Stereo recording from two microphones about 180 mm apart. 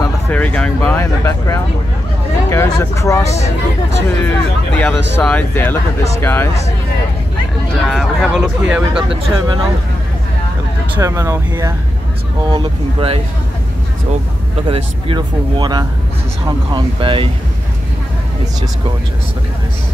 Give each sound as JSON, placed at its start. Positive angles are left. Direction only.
{"t": 0.3, "sound": "speech", "side_deg": 10}
{"t": 4.3, "sound": "speech", "side_deg": 5}
{"t": 7.8, "sound": "speech", "side_deg": 0}
{"t": 9.1, "sound": "speech", "side_deg": -30}
{"t": 11.0, "sound": "speech", "side_deg": -15}
{"t": 12.4, "sound": "speech", "side_deg": -30}
{"t": 14.7, "sound": "speech", "side_deg": -30}